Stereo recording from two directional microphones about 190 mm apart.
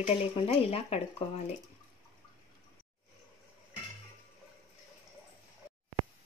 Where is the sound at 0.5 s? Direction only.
30° left (ahead or behind).